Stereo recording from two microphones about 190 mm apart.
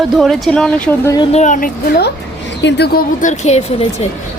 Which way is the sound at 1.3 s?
40° left (ahead or behind).